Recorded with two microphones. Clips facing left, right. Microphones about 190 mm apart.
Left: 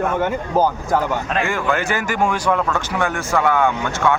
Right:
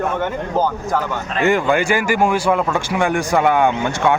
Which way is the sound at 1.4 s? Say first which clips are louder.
Right 10 dB; 15° right (ahead or behind).